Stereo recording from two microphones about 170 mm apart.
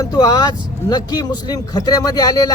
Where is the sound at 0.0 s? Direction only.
20° left (ahead or behind).